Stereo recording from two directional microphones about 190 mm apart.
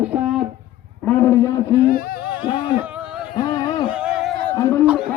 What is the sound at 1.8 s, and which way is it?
Speech, 50° left (ahead or behind).